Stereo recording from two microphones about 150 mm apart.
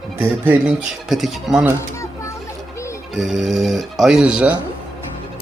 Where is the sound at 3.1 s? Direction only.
5° right (ahead or behind).